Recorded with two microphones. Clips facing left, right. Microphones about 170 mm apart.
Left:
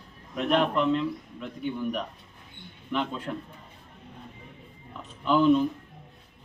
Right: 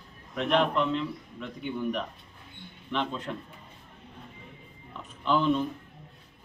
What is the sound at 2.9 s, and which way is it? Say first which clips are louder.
Speech: left 1 dB; 5° left (ahead or behind).